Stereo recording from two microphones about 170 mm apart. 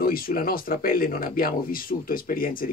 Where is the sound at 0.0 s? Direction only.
60° left (ahead or behind).